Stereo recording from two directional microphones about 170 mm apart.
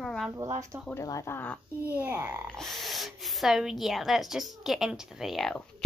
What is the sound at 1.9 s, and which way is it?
Speech, 10° right (ahead or behind).